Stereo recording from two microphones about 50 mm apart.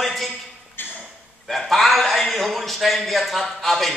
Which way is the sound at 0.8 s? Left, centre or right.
Left.